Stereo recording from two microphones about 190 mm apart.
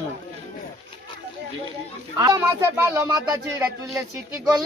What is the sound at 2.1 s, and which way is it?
Speech, 15° right (ahead or behind).